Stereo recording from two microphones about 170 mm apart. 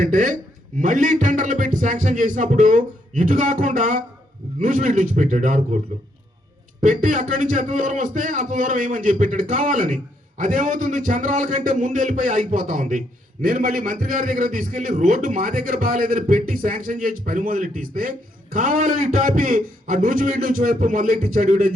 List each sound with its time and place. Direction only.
0.0 s a man's voice: 50° right (ahead or behind)
6.8 s a man's voice: 50° right (ahead or behind)